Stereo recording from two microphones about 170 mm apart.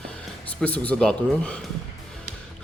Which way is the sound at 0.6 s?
10° left (ahead or behind).